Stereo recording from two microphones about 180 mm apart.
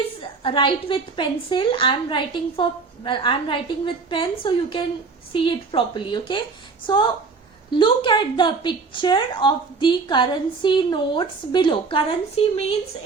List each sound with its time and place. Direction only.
0.2 s a woman's voice: 30° left (ahead or behind)